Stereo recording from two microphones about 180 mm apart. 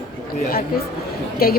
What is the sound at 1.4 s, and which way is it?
Speech, 55° left (ahead or behind).